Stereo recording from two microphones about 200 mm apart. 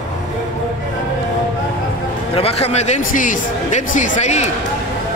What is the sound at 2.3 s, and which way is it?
Speech, 30° left (ahead or behind).